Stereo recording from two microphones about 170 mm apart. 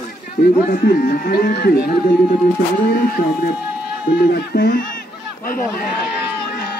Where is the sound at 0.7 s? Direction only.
55° left (ahead or behind).